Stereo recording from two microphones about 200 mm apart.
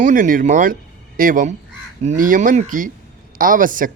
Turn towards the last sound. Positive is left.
turn(degrees=-40)  # may be behind; listen again after turning